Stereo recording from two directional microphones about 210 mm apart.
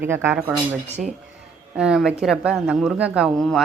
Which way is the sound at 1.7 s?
5° right (ahead or behind).